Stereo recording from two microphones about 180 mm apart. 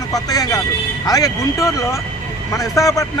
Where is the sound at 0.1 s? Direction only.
20° left (ahead or behind).